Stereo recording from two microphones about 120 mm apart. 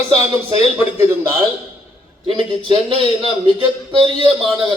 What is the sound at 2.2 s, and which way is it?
A man's voice, 45° right (ahead or behind).